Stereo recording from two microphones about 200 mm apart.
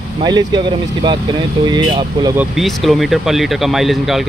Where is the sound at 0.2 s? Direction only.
20° right (ahead or behind).